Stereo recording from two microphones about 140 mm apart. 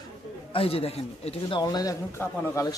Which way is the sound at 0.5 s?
40° left (ahead or behind).